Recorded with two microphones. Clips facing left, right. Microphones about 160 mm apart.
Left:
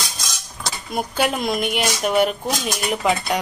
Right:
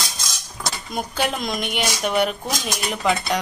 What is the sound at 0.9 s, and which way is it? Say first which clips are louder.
A woman's voice: left 3 dB; 5° left (ahead or behind).